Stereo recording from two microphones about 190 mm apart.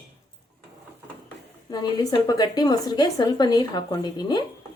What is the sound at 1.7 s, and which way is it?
A woman's voice, 20° left (ahead or behind).